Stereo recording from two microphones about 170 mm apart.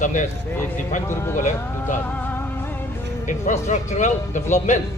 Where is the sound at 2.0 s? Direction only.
10° left (ahead or behind).